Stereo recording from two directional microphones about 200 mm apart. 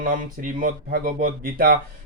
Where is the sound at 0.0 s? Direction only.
45° right (ahead or behind).